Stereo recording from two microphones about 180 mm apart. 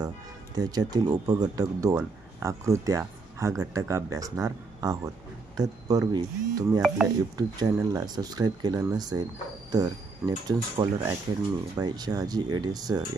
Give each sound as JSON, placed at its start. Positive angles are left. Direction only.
{"t": 0.6, "sound": "speech", "side_deg": -20}